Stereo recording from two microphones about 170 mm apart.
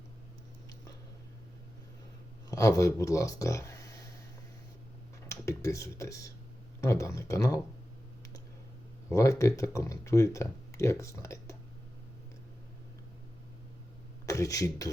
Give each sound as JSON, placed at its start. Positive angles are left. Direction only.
{"t": 2.5, "sound": "speech", "side_deg": 20}
{"t": 5.3, "sound": "speech", "side_deg": 20}
{"t": 9.0, "sound": "speech", "side_deg": 20}
{"t": 14.3, "sound": "speech", "side_deg": 20}